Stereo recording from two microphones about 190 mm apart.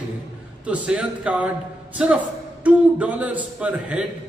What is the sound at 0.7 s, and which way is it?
Speech, 5° right (ahead or behind).